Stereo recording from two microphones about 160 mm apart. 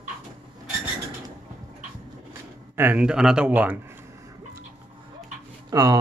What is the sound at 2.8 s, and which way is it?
Speech, 10° right (ahead or behind).